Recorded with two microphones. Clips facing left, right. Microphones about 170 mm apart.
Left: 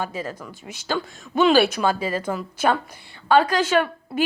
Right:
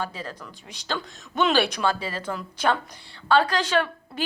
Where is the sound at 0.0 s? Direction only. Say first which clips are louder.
Left 4 dB; 10° left (ahead or behind).